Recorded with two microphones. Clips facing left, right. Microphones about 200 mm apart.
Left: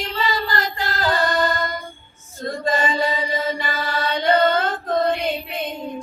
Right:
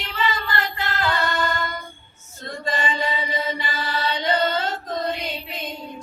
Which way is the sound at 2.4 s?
40° left (ahead or behind).